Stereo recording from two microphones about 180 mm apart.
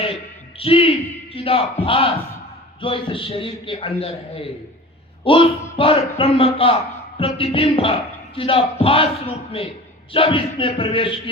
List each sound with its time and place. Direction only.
0.6 s a man's voice: 30° left (ahead or behind)